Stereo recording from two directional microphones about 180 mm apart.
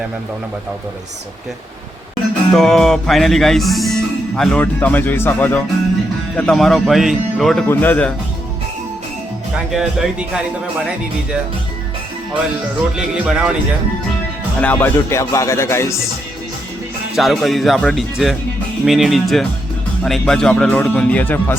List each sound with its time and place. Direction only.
2.5 s speech: centre (ahead or behind)
9.7 s speech: 5° right (ahead or behind)
13.1 s speech: 5° right (ahead or behind)
14.6 s speech: 10° left (ahead or behind)
17.2 s speech: centre (ahead or behind)